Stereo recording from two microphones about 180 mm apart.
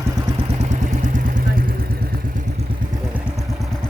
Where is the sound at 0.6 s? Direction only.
45° right (ahead or behind).